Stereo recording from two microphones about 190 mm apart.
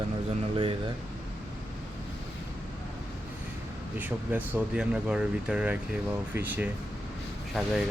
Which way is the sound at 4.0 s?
10° right (ahead or behind).